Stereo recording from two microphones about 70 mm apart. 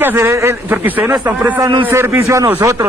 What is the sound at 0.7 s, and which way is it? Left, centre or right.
Speech, right.